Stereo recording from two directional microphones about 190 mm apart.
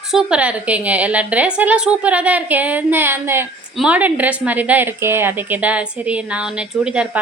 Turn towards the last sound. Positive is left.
turn(degrees=-5)  # may be behind; listen again after turning